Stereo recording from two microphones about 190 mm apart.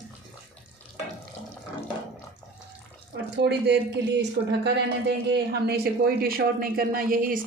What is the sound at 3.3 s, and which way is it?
Speech, 65° right (ahead or behind).